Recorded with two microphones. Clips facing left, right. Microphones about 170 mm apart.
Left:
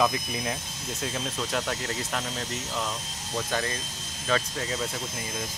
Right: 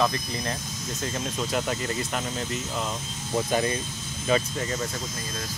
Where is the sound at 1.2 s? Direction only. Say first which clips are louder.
Right 4 dB; 5° right (ahead or behind).